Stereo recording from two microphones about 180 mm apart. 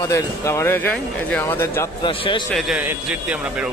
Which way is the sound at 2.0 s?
30° left (ahead or behind).